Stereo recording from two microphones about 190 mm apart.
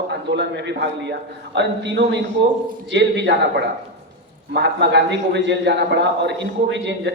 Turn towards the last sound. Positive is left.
turn(degrees=-70)  # may be behind; listen again after turning